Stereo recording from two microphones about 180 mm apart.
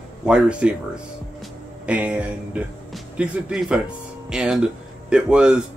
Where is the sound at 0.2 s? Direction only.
5° right (ahead or behind).